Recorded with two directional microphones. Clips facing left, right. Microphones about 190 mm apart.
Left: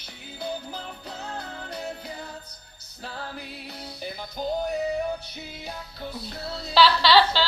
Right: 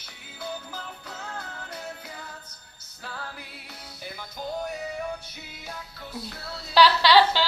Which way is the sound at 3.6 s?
30° left (ahead or behind).